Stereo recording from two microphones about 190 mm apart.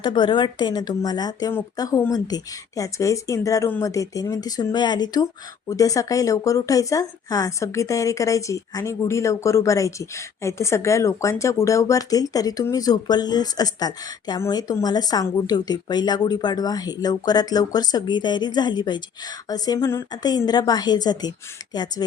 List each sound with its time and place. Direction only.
0.0 s a woman's voice: 25° left (ahead or behind)